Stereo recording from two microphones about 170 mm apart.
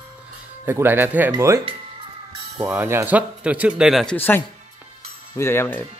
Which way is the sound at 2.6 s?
15° right (ahead or behind).